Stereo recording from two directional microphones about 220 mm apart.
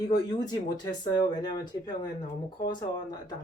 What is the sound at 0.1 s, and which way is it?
Speech, 20° left (ahead or behind).